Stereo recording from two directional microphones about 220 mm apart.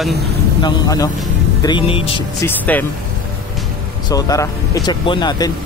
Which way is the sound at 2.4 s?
10° left (ahead or behind).